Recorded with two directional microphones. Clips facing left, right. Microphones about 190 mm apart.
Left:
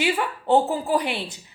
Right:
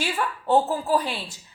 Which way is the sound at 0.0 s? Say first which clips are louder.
Left 4 dB; 15° left (ahead or behind).